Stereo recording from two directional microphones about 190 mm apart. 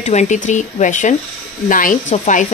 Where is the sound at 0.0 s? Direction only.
40° left (ahead or behind).